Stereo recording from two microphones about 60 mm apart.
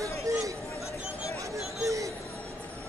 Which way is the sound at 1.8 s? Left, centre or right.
Right.